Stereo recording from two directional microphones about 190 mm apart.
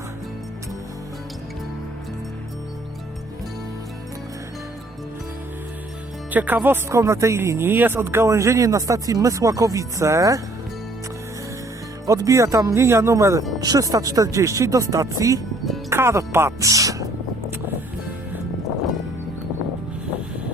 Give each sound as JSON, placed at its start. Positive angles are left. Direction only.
{"t": 6.3, "sound": "speech", "side_deg": -10}
{"t": 12.0, "sound": "speech", "side_deg": -15}